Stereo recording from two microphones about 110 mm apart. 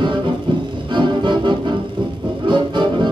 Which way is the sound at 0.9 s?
45° right (ahead or behind).